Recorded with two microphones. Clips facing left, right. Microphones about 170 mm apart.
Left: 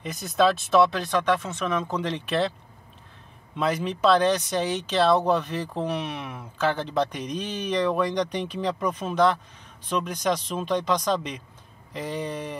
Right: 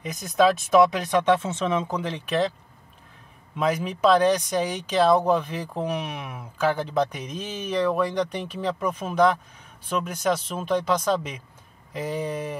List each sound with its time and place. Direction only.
0.4 s speech: 10° right (ahead or behind)
2.0 s speech: 10° right (ahead or behind)
3.5 s speech: 10° right (ahead or behind)